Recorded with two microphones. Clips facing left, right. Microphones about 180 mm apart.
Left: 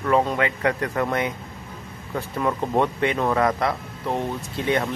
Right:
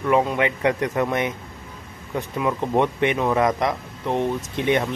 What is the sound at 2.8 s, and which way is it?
Speech, 20° right (ahead or behind).